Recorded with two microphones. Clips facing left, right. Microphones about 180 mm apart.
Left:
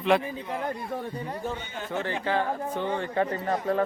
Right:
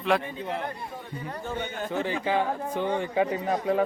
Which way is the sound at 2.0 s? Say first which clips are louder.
Right 1 dB; 15° right (ahead or behind).